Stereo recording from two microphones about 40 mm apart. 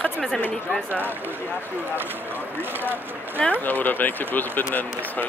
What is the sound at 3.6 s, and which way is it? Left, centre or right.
Speech, left.